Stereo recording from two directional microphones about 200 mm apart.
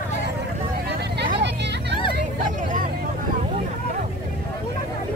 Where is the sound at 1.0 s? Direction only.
55° right (ahead or behind).